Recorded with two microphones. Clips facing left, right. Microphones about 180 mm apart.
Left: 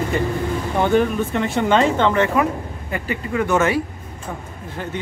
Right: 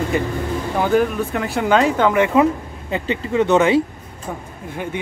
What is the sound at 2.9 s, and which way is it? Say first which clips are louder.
Speech: right 4 dB; 25° right (ahead or behind).